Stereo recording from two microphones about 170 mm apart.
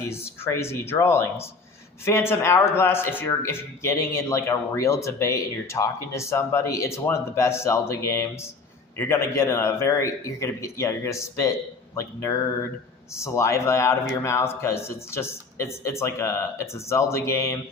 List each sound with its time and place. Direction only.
0.1 s a man's voice: 15° left (ahead or behind)
11.9 s a sound: 20° left (ahead or behind)
13.1 s a man's voice: 15° left (ahead or behind)